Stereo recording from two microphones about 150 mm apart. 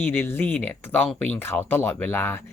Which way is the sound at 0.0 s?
15° left (ahead or behind).